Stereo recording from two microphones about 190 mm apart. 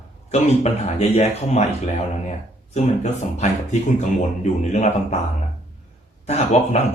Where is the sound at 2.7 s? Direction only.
35° left (ahead or behind).